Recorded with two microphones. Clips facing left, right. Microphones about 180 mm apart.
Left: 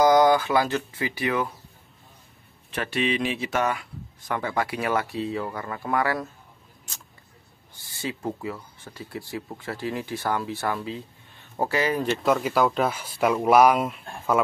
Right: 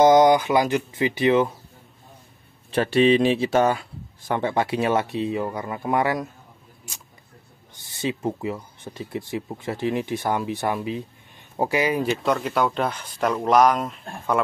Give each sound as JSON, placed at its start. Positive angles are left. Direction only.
{"t": 0.0, "sound": "speech", "side_deg": -20}
{"t": 2.7, "sound": "speech", "side_deg": -30}
{"t": 7.7, "sound": "speech", "side_deg": -20}
{"t": 12.1, "sound": "speech", "side_deg": 0}